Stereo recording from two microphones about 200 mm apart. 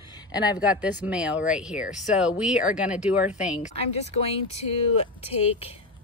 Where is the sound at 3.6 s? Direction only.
30° left (ahead or behind).